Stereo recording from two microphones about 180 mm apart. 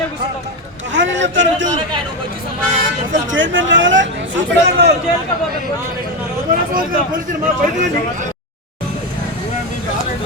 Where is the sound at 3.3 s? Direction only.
90° right.